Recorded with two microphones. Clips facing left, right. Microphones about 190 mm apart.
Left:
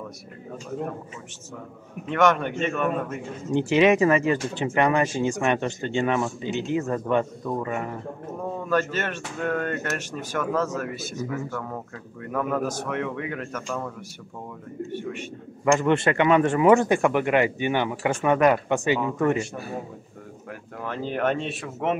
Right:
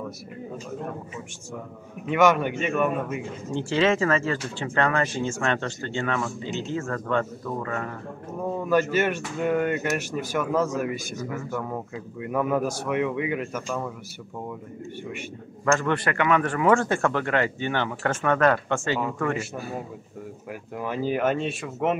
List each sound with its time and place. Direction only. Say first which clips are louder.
2.0 s speech: right 1 dB; 5° right (ahead or behind)
3.5 s speech: left 4 dB; 15° left (ahead or behind)
8.4 s speech: right 2 dB; 10° right (ahead or behind)
15.6 s speech: left 3 dB; 15° left (ahead or behind)
20.7 s speech: right 3 dB; 10° right (ahead or behind)